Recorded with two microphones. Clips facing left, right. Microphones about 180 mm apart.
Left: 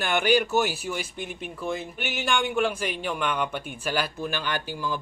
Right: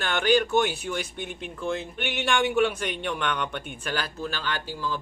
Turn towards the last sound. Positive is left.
turn(degrees=15)  # may be behind; listen again after turning